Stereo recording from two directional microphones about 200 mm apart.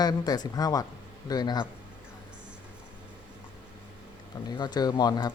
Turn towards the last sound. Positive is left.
turn(degrees=20)  # may be behind; listen again after turning